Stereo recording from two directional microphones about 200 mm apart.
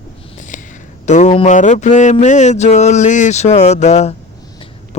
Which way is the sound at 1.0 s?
35° left (ahead or behind).